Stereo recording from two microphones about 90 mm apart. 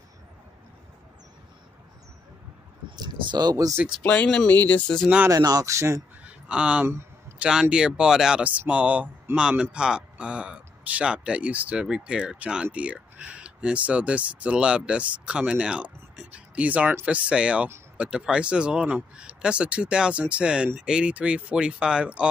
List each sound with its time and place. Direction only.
3.0 s speech: 50° right (ahead or behind)
4.0 s speech: 15° left (ahead or behind)
5.3 s speech: 45° right (ahead or behind)
6.2 s a sound: 10° right (ahead or behind)
6.9 s a sound: 30° right (ahead or behind)
7.3 s speech: 10° right (ahead or behind)